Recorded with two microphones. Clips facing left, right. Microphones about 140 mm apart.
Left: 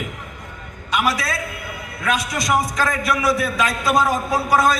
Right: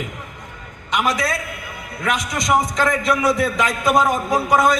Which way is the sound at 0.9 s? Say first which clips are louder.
Right 1 dB; 20° right (ahead or behind).